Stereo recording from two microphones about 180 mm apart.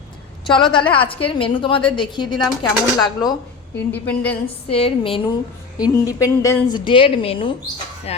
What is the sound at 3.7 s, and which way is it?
Speech, 10° left (ahead or behind).